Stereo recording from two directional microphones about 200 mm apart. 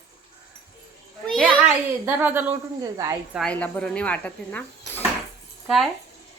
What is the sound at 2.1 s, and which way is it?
A woman's voice, 10° right (ahead or behind).